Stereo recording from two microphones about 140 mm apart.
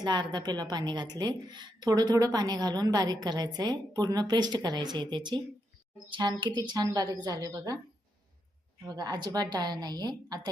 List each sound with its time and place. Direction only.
0.0 s a woman's voice: 30° right (ahead or behind)
8.9 s a woman's voice: 30° right (ahead or behind)